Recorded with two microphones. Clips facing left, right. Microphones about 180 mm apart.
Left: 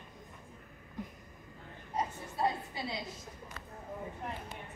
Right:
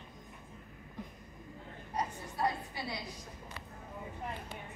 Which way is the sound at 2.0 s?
20° left (ahead or behind).